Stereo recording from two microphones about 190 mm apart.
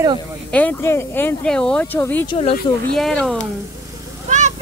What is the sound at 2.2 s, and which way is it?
Speech, 30° left (ahead or behind).